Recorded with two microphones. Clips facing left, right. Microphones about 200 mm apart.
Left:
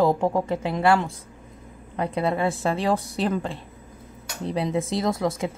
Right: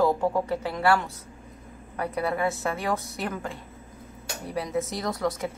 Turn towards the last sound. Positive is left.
turn(degrees=25)  # may be behind; listen again after turning